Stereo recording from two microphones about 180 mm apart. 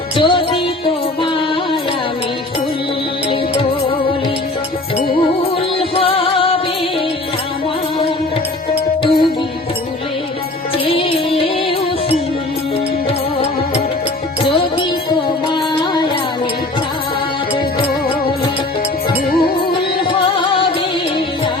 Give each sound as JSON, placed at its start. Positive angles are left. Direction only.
{"t": 0.2, "sound": "music", "side_deg": 30}
{"t": 5.9, "sound": "music", "side_deg": 30}
{"t": 10.8, "sound": "music", "side_deg": 30}
{"t": 20.4, "sound": "music", "side_deg": 30}